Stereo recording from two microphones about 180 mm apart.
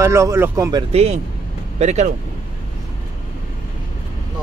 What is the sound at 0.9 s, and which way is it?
Speech, 35° right (ahead or behind).